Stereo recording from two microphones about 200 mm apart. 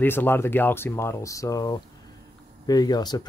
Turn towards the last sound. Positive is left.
turn(degrees=20)  # may be behind; listen again after turning